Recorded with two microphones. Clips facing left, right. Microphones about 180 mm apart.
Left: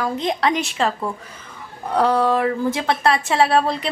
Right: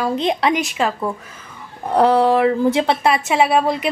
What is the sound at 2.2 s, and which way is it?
Speech, 20° right (ahead or behind).